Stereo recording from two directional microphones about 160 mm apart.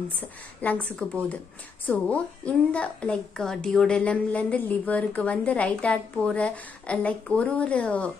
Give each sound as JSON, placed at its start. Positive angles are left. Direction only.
{"t": 0.2, "sound": "a woman's voice", "side_deg": 10}